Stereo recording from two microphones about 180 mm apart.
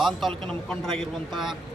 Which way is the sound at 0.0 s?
Centre (ahead or behind).